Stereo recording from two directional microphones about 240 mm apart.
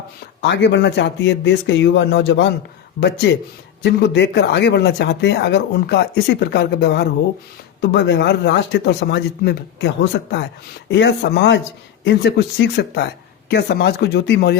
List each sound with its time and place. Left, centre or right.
0.4 s speech: left